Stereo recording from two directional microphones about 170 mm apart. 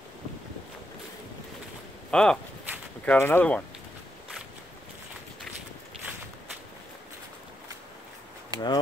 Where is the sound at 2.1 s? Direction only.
5° left (ahead or behind).